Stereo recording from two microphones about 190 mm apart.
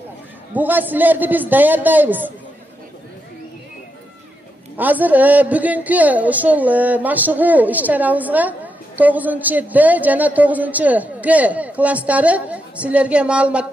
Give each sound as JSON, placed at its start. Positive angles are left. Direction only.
{"t": 0.6, "sound": "a man's voice", "side_deg": -10}
{"t": 4.7, "sound": "a man's voice", "side_deg": -10}